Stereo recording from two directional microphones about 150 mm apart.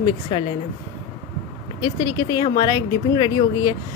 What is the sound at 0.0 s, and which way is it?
Speech, 35° left (ahead or behind).